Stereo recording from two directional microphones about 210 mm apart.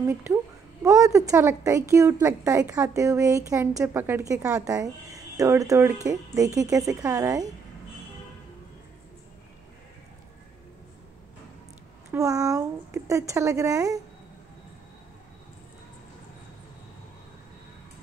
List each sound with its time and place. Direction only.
0.0 s a woman's voice: 15° right (ahead or behind)
12.1 s a woman's voice: 15° right (ahead or behind)